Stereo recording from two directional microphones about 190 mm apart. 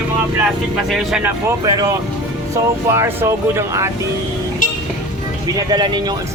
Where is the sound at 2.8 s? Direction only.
15° right (ahead or behind).